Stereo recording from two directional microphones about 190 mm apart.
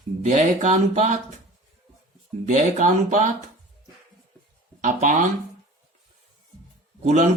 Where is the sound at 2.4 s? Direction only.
40° right (ahead or behind).